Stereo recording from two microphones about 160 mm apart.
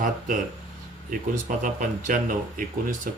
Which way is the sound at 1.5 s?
55° right (ahead or behind).